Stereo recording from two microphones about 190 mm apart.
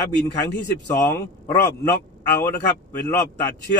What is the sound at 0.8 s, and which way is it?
Speech, 10° left (ahead or behind).